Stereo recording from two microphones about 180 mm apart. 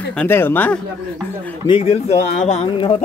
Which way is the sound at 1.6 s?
30° left (ahead or behind).